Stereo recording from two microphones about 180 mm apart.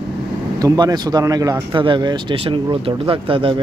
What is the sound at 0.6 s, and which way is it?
A man's voice, 20° right (ahead or behind).